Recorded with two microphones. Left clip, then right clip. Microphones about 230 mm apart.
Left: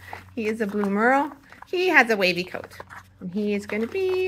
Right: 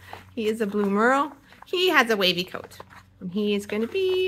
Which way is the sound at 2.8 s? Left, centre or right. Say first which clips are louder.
Left 4 dB; left.